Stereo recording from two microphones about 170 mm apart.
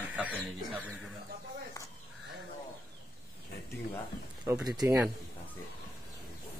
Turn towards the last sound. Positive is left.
turn(degrees=-20)  # may be behind; listen again after turning